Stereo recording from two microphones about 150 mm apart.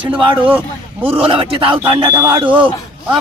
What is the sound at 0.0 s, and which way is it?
Speech, 35° right (ahead or behind).